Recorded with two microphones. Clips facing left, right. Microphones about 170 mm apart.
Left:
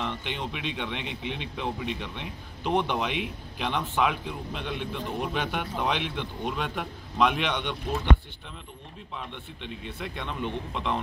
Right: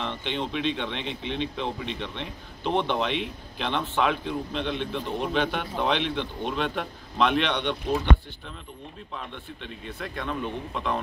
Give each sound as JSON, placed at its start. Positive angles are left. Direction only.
{"t": 0.0, "sound": "speech", "side_deg": 5}
{"t": 9.1, "sound": "speech", "side_deg": 15}